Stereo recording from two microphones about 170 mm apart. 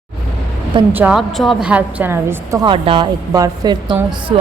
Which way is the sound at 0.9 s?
5° right (ahead or behind).